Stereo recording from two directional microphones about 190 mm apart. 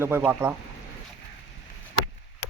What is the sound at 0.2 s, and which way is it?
Speech, 10° right (ahead or behind).